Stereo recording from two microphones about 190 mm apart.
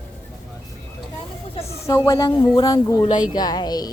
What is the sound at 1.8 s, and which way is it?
Speech, 15° left (ahead or behind).